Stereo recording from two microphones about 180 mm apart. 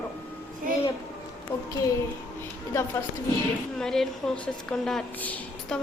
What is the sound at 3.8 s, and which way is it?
A woman's voice, centre (ahead or behind).